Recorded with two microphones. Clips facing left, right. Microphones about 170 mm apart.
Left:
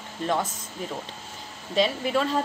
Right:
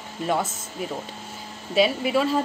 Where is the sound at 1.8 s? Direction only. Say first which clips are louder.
Right 3 dB; 10° right (ahead or behind).